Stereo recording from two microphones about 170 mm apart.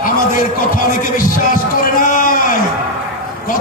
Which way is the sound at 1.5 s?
55° left (ahead or behind).